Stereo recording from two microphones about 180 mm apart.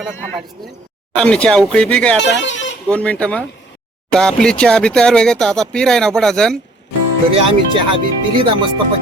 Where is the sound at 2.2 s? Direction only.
90° left.